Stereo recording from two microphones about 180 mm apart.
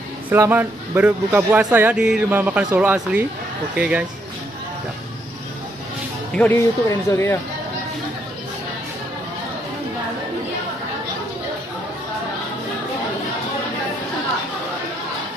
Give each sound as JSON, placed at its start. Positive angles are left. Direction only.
{"t": 0.3, "sound": "speech", "side_deg": -10}
{"t": 6.3, "sound": "speech", "side_deg": 10}